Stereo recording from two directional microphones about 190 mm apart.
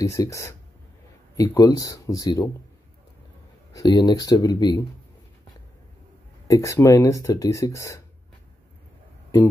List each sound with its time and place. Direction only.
0.0 s speech: 15° left (ahead or behind)
3.7 s speech: 20° left (ahead or behind)
6.4 s speech: 15° left (ahead or behind)